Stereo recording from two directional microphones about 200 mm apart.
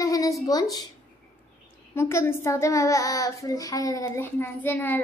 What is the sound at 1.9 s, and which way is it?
A woman's voice, 15° left (ahead or behind).